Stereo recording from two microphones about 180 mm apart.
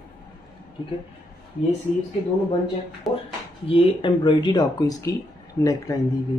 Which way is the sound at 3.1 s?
Centre (ahead or behind).